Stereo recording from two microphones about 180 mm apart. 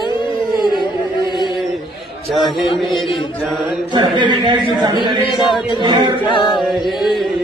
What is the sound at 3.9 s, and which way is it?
A man's voice, 25° right (ahead or behind).